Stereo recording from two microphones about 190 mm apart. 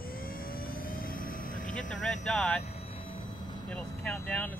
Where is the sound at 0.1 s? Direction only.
50° left (ahead or behind).